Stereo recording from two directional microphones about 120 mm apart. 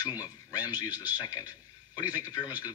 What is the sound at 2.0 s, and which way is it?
Speech, 15° right (ahead or behind).